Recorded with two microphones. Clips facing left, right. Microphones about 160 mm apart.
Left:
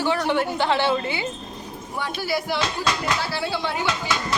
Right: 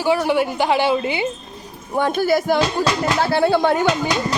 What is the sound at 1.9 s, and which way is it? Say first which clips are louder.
A woman's voice: right 9 dB; 50° right (ahead or behind).